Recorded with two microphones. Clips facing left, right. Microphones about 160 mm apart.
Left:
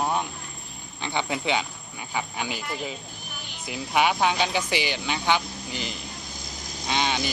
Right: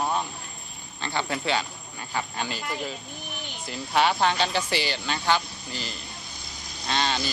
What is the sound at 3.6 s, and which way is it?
Speech, 10° left (ahead or behind).